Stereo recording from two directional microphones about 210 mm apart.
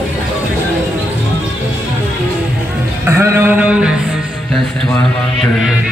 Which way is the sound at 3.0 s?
15° right (ahead or behind).